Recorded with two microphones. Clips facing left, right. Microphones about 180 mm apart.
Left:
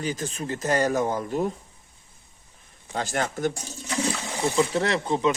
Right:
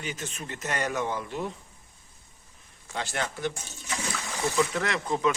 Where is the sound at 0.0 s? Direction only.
35° left (ahead or behind).